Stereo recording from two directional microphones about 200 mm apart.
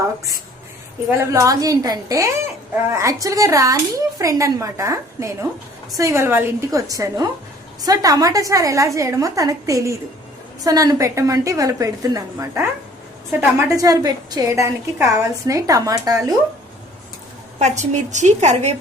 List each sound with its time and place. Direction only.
1.2 s a woman's voice: 15° right (ahead or behind)
17.6 s a woman's voice: 35° right (ahead or behind)